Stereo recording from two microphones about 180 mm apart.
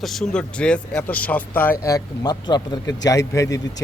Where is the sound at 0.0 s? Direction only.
Centre (ahead or behind).